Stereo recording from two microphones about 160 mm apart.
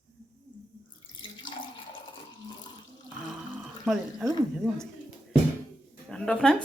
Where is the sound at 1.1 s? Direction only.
30° left (ahead or behind).